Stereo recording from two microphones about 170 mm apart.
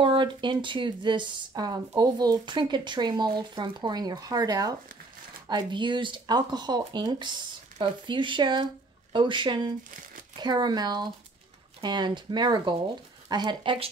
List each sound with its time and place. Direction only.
0.0 s speech: 30° right (ahead or behind)
9.8 s speech: 50° right (ahead or behind)
10.4 s speech: 25° right (ahead or behind)